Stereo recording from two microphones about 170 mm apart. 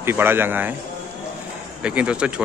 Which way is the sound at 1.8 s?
5° right (ahead or behind).